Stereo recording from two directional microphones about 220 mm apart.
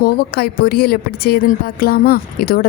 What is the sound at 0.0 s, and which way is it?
A woman's voice, 45° left (ahead or behind).